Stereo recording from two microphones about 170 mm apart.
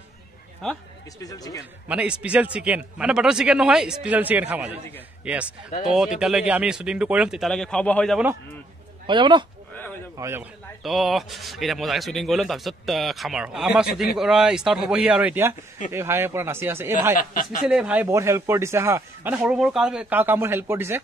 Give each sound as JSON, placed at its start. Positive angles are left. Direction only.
{"t": 0.6, "sound": "speech", "side_deg": 5}
{"t": 1.2, "sound": "speech", "side_deg": 20}
{"t": 1.9, "sound": "a man's voice", "side_deg": -5}
{"t": 9.0, "sound": "speech", "side_deg": -25}
{"t": 10.1, "sound": "speech", "side_deg": -15}
{"t": 10.8, "sound": "speech", "side_deg": 0}
{"t": 17.2, "sound": "speech", "side_deg": 50}
{"t": 17.6, "sound": "speech", "side_deg": -5}